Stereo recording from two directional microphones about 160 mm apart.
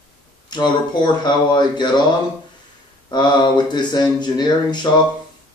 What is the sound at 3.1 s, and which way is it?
Speech, 25° left (ahead or behind).